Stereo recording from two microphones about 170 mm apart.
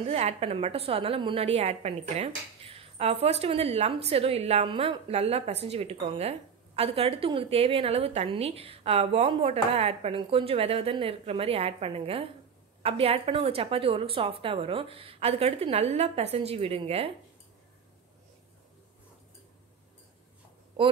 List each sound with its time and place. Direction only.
0.0 s a woman's voice: 35° right (ahead or behind)
20.8 s a woman's voice: 30° right (ahead or behind)